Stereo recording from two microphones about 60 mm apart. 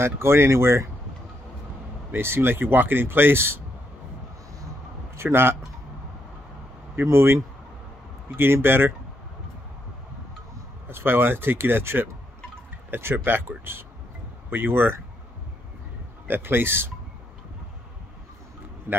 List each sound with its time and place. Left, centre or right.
0.0 s speech: right
2.1 s speech: right
5.1 s speech: right
7.0 s speech: right
8.4 s speech: right
10.9 s speech: right
16.3 s speech: right
18.9 s a man's voice: right